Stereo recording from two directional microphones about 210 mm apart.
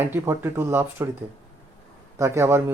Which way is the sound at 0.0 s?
10° right (ahead or behind).